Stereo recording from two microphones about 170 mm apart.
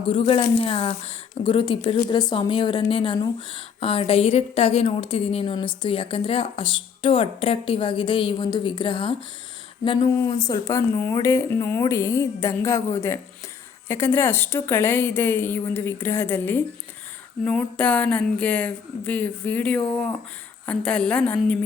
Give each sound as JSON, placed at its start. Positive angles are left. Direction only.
{"t": 0.1, "sound": "a woman's voice", "side_deg": 35}